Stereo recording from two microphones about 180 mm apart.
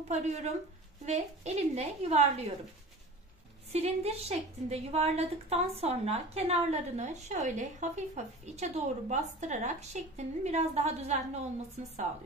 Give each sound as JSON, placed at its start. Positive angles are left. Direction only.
{"t": 0.1, "sound": "a woman's voice", "side_deg": -40}
{"t": 3.7, "sound": "a woman's voice", "side_deg": -35}